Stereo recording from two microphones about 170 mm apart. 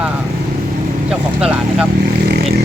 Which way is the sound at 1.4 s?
5° right (ahead or behind).